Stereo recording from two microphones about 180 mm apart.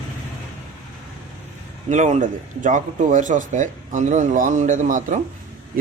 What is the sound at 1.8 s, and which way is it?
A man's voice, 40° right (ahead or behind).